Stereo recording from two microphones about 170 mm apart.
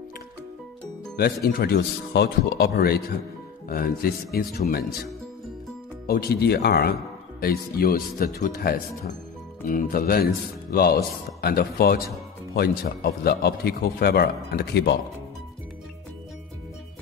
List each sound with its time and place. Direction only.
1.1 s speech: 65° left (ahead or behind)
6.0 s a man's voice: 65° left (ahead or behind); by 15.0 s 80° left